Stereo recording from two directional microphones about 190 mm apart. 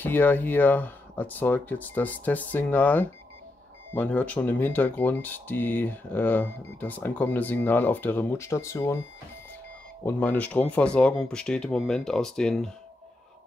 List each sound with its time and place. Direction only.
0.0 s speech: 10° left (ahead or behind)
10.0 s speech: 10° left (ahead or behind)